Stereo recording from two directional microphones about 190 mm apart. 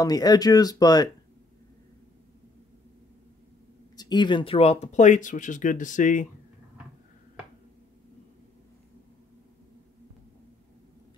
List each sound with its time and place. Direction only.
0.0 s speech: 20° left (ahead or behind)
3.9 s speech: 20° left (ahead or behind); by 6.2 s 40° left (ahead or behind)